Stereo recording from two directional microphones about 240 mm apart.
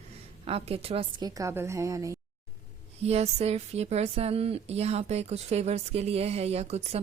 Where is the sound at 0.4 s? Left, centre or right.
Right.